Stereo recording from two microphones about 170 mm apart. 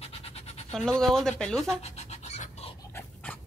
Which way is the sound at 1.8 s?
40° left (ahead or behind).